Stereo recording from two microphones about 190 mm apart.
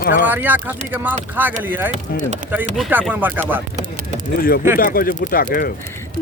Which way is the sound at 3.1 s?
10° right (ahead or behind).